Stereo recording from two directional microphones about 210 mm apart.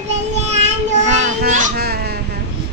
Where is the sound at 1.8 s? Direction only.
50° right (ahead or behind).